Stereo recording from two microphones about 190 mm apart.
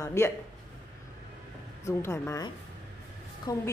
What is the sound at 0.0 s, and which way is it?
Speech, 15° left (ahead or behind).